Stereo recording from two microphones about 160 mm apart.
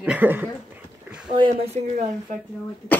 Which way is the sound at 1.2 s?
30° right (ahead or behind).